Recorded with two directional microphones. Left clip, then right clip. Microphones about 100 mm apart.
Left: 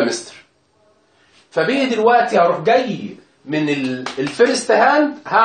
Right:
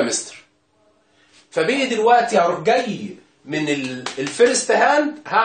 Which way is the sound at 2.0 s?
20° left (ahead or behind).